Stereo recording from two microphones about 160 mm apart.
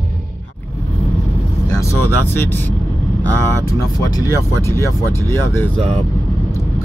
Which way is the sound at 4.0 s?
20° left (ahead or behind).